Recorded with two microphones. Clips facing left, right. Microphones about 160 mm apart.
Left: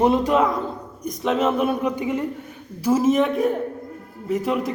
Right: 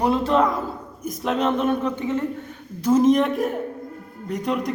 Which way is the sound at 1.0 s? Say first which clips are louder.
Left 1 dB; centre (ahead or behind).